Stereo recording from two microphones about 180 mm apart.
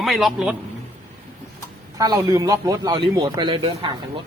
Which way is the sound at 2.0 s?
20° right (ahead or behind).